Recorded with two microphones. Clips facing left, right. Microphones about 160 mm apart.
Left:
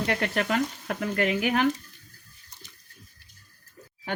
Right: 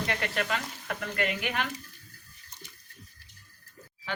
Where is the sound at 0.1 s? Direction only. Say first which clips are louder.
Left 6 dB; 45° left (ahead or behind).